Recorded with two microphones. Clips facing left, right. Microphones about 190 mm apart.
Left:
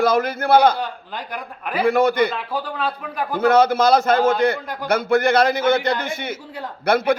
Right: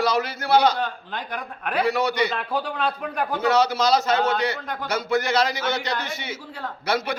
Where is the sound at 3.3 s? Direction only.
55° left (ahead or behind).